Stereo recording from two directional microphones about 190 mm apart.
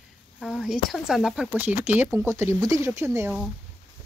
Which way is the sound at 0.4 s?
Centre (ahead or behind).